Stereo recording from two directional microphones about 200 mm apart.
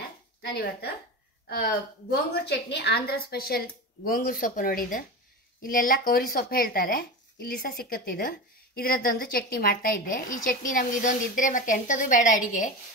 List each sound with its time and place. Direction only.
0.4 s speech: 55° left (ahead or behind); by 12.7 s 40° left (ahead or behind)